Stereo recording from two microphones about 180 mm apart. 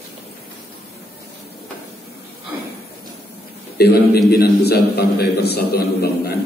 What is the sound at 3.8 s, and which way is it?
A man's voice, 60° left (ahead or behind).